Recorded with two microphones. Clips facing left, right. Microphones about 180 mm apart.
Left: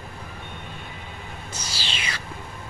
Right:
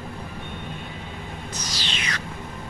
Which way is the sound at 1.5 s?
30° left (ahead or behind).